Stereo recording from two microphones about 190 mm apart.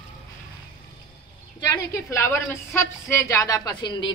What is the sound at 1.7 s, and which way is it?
Speech, 15° left (ahead or behind).